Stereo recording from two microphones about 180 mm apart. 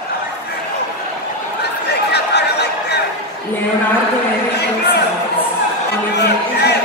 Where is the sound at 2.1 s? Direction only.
70° left (ahead or behind).